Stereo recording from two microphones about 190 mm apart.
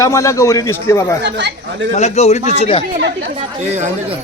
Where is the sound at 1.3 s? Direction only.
65° right (ahead or behind).